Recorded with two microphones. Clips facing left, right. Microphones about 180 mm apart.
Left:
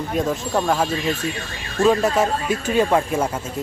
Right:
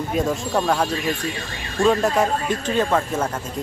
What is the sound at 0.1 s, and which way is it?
Speech, centre (ahead or behind).